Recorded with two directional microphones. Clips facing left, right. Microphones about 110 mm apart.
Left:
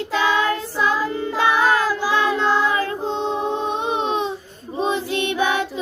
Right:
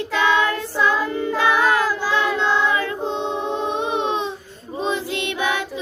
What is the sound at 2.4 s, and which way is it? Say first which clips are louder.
Child singing: left 1 dB; 40° left (ahead or behind).